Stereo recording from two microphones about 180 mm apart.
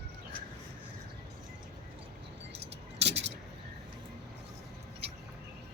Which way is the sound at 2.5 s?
35° right (ahead or behind).